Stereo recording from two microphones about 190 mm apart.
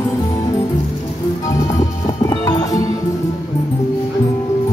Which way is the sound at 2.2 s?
20° left (ahead or behind).